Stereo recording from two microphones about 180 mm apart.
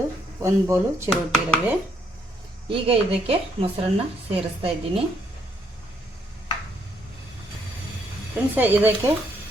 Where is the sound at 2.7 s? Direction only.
30° right (ahead or behind).